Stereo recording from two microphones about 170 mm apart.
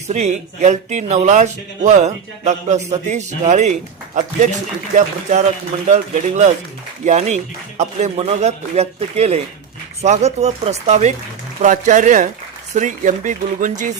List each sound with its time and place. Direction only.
0.1 s a man's voice: 45° right (ahead or behind)